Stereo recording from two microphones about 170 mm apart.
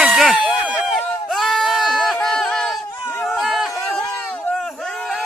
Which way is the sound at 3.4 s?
Centre (ahead or behind).